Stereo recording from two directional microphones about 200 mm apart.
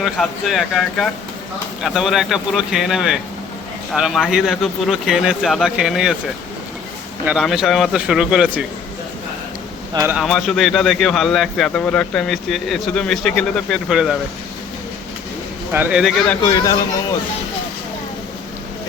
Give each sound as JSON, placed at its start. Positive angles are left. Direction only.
{"t": 0.0, "sound": "speech", "side_deg": 0}
{"t": 7.3, "sound": "speech", "side_deg": 0}
{"t": 9.9, "sound": "a man's voice", "side_deg": -15}
{"t": 10.2, "sound": "speech", "side_deg": 0}
{"t": 15.7, "sound": "speech", "side_deg": -5}
{"t": 16.6, "sound": "speech", "side_deg": 20}